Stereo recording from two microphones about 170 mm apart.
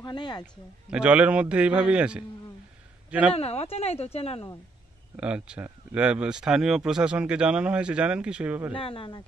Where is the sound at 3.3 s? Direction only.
35° left (ahead or behind).